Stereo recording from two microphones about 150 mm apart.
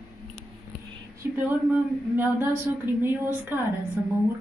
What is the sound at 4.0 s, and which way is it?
Speech, 15° right (ahead or behind).